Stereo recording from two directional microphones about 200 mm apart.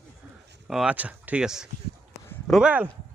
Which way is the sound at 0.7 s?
5° right (ahead or behind).